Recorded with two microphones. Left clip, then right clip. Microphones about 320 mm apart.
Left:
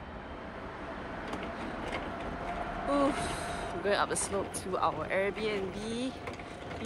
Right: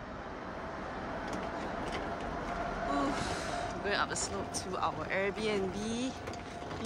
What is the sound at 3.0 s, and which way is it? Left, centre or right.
Speech, centre.